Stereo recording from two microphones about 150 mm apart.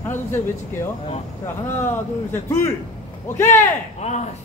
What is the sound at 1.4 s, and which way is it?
Speech, 15° left (ahead or behind).